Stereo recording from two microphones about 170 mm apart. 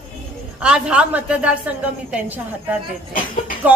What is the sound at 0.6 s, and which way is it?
A woman's voice, 5° right (ahead or behind).